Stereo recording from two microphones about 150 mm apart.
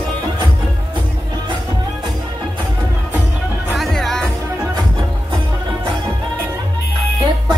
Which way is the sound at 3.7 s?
Centre (ahead or behind).